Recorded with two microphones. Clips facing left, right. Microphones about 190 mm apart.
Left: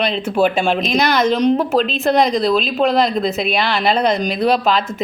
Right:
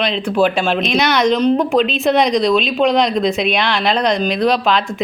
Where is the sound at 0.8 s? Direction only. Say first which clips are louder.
Right 3 dB; centre (ahead or behind).